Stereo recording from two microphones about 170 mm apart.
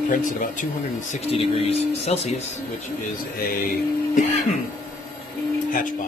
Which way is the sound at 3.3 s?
60° left (ahead or behind).